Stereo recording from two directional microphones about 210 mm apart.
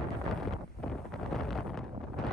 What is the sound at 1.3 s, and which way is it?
Wind noise, 5° left (ahead or behind).